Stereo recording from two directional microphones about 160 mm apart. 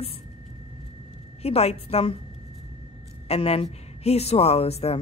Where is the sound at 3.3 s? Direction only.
40° left (ahead or behind).